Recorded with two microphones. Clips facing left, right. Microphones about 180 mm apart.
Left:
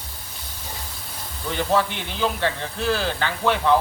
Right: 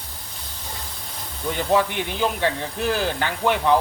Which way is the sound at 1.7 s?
15° right (ahead or behind).